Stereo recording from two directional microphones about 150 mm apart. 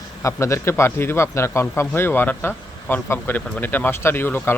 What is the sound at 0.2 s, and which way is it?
A man's voice, 20° left (ahead or behind).